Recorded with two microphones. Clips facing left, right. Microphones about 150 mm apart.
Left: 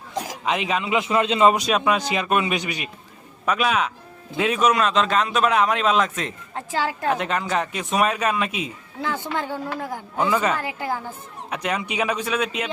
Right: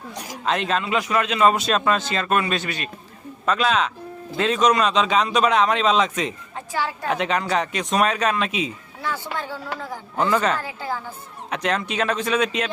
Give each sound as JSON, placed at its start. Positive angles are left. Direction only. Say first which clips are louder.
{"t": 0.4, "sound": "a man's voice", "louder": "right 2 dB", "side_deg": 10}
{"t": 0.9, "sound": "a man's voice", "louder": "left 3 dB", "side_deg": 25}
{"t": 9.2, "sound": "a man's voice", "louder": "left 3 dB", "side_deg": 15}